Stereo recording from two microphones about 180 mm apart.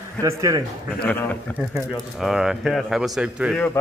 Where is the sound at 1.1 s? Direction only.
10° left (ahead or behind).